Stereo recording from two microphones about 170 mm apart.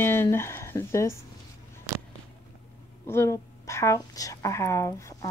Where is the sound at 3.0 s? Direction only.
15° left (ahead or behind).